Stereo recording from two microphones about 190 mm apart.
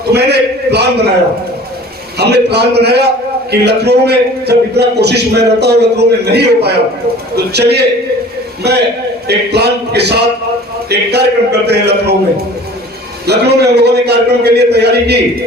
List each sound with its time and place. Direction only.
0.1 s a sound: 60° right (ahead or behind)
2.1 s a man's voice: 60° right (ahead or behind)
13.2 s a man's voice: 60° right (ahead or behind)